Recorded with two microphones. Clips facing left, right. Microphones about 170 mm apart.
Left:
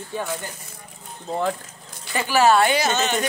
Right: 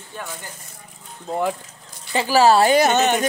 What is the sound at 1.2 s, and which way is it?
Speech, 10° right (ahead or behind).